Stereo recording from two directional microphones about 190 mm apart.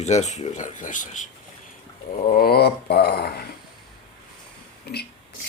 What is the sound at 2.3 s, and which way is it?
Speech, 55° left (ahead or behind).